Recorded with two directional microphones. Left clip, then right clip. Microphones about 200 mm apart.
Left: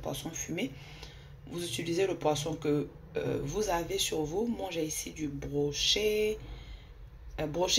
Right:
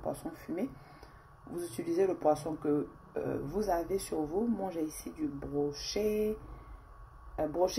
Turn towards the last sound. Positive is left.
turn(degrees=-15)  # may be behind; listen again after turning